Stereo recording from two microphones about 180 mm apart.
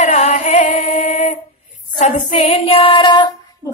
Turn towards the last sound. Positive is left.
turn(degrees=25)  # may be behind; listen again after turning